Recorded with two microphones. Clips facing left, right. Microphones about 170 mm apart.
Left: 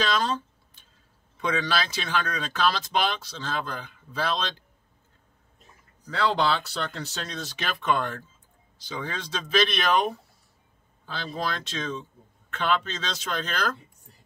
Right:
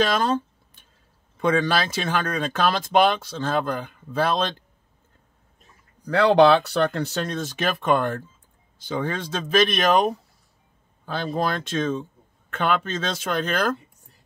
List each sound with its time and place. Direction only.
0.0 s speech: 50° right (ahead or behind)
1.4 s speech: 50° right (ahead or behind)
6.0 s speech: 60° right (ahead or behind)